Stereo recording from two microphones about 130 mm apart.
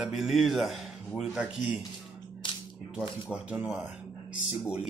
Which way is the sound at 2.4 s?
40° left (ahead or behind).